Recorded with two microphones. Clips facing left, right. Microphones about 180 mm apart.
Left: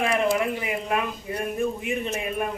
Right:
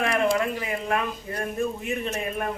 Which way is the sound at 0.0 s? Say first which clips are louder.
Even; 5° left (ahead or behind).